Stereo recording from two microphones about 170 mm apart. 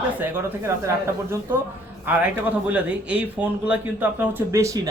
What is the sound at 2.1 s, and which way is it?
Speech, 10° right (ahead or behind).